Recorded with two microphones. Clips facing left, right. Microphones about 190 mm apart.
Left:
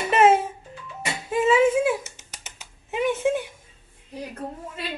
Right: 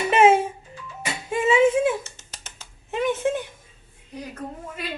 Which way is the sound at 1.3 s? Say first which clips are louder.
Even; 5° left (ahead or behind).